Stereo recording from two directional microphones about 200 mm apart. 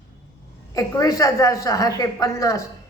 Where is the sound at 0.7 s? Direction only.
15° left (ahead or behind).